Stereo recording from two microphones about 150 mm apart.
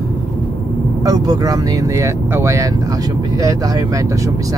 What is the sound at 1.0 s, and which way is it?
Speech, 25° right (ahead or behind).